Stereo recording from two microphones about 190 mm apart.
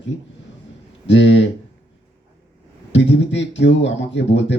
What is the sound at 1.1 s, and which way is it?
Speech, 70° left (ahead or behind).